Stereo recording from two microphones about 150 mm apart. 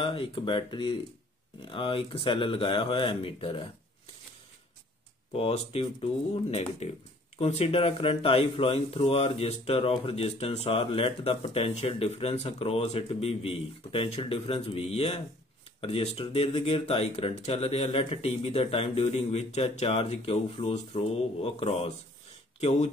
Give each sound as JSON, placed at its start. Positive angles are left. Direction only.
{"t": 0.0, "sound": "speech", "side_deg": 35}
{"t": 5.3, "sound": "speech", "side_deg": 40}